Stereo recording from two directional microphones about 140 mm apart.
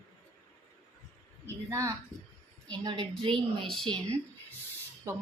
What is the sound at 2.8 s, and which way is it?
Speech, 35° right (ahead or behind).